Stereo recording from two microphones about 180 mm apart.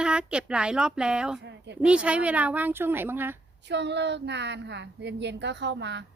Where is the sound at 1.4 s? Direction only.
75° right (ahead or behind).